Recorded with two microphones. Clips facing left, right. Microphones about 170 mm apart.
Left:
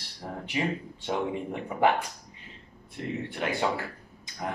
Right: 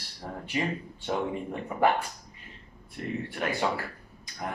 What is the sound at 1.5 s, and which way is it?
Speech, 15° left (ahead or behind).